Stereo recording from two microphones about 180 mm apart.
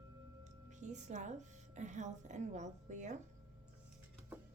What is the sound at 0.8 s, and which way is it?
A woman's voice, 40° right (ahead or behind).